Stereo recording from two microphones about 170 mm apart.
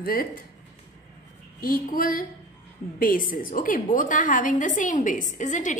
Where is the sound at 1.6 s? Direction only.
55° left (ahead or behind).